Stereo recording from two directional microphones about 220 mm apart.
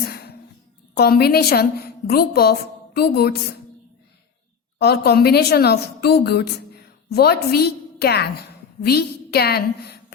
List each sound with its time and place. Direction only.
0.1 s a sound: 45° left (ahead or behind)
0.9 s a woman's voice: 45° left (ahead or behind)
4.8 s a woman's voice: 50° left (ahead or behind)